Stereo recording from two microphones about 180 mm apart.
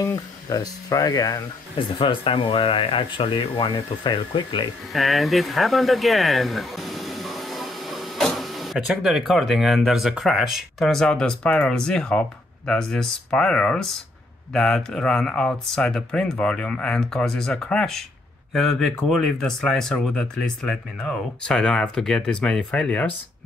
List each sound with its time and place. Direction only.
0.0 s speech: 20° left (ahead or behind)
2.0 s speech: 30° left (ahead or behind)
4.9 s speech: centre (ahead or behind)